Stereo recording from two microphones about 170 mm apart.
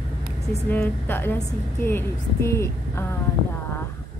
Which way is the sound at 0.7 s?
10° left (ahead or behind).